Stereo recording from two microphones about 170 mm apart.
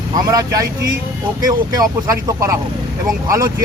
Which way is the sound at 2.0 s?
20° right (ahead or behind).